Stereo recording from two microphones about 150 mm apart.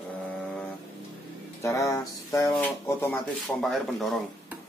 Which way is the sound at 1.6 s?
20° left (ahead or behind).